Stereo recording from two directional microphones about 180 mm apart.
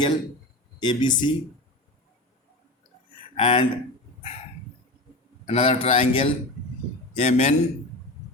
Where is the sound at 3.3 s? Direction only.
30° left (ahead or behind).